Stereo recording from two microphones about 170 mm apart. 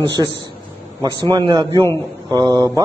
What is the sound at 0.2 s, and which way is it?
Speech, 25° right (ahead or behind).